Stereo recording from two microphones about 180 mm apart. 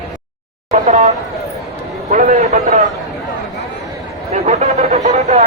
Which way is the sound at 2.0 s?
45° right (ahead or behind).